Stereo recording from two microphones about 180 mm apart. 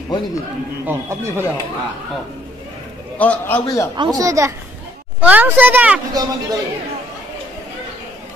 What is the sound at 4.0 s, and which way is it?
Speech, 20° right (ahead or behind).